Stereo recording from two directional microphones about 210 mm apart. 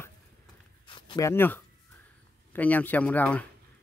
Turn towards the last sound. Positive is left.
turn(degrees=5)  # may be behind; listen again after turning